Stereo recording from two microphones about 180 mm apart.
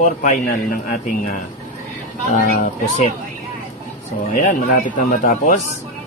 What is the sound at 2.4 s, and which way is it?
Speech, 45° left (ahead or behind).